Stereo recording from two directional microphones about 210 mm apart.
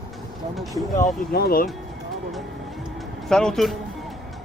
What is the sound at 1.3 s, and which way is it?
Speech, 45° left (ahead or behind).